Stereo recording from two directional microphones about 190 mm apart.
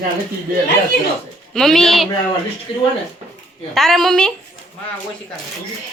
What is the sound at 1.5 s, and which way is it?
Speech, centre (ahead or behind).